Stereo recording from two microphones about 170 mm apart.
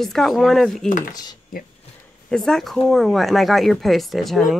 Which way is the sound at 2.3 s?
5° left (ahead or behind).